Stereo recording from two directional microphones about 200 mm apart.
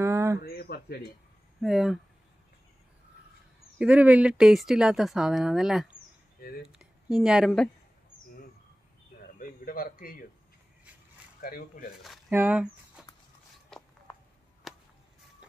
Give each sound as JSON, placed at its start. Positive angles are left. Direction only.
{"t": 0.0, "sound": "a sound", "side_deg": -15}
{"t": 0.4, "sound": "speech", "side_deg": 50}
{"t": 1.6, "sound": "a woman's voice", "side_deg": 0}
{"t": 3.7, "sound": "a woman's voice", "side_deg": -5}
{"t": 9.4, "sound": "a man's voice", "side_deg": 45}
{"t": 11.4, "sound": "speech", "side_deg": 45}
{"t": 12.3, "sound": "speech", "side_deg": -10}
{"t": 13.7, "sound": "a sound", "side_deg": 0}
{"t": 14.7, "sound": "a sound", "side_deg": 0}